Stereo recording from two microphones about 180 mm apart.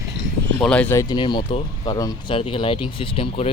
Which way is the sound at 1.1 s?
25° left (ahead or behind).